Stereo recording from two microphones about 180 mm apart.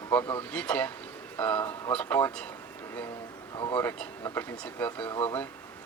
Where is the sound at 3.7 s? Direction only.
10° left (ahead or behind).